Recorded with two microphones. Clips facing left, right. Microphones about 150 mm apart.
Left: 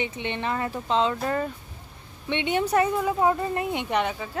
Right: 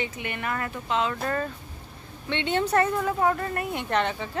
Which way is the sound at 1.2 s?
15° left (ahead or behind).